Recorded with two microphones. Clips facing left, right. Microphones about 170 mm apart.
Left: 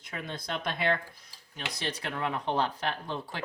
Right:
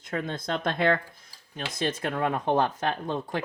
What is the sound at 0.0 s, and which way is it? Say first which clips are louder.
Speech: right 7 dB; 50° right (ahead or behind).